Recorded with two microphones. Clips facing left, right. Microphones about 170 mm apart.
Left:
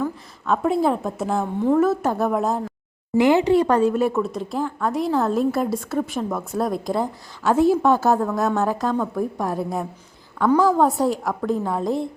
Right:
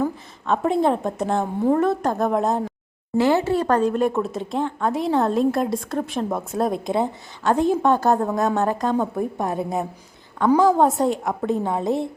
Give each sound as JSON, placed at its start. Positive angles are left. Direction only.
{"t": 0.4, "sound": "a woman's voice", "side_deg": 0}
{"t": 3.2, "sound": "a woman's voice", "side_deg": 15}